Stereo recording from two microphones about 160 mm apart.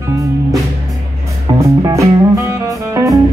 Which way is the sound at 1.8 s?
20° right (ahead or behind).